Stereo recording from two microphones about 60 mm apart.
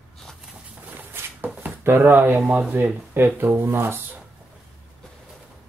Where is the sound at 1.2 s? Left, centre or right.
Right.